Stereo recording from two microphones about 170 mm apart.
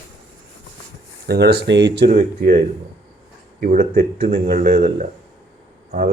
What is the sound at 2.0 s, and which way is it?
Speech, 50° right (ahead or behind).